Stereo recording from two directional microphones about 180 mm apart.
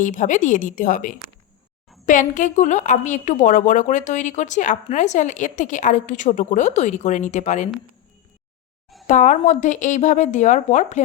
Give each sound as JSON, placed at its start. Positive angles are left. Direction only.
{"t": 0.0, "sound": "a woman's voice", "side_deg": 45}
{"t": 9.0, "sound": "a woman's voice", "side_deg": 45}